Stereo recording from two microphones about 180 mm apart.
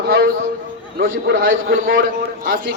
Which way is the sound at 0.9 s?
55° right (ahead or behind).